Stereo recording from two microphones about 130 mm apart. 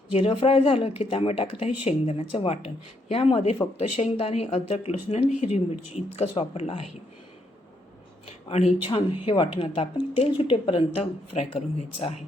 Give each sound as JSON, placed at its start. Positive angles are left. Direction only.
{"t": 0.1, "sound": "speech", "side_deg": 50}
{"t": 8.3, "sound": "speech", "side_deg": 50}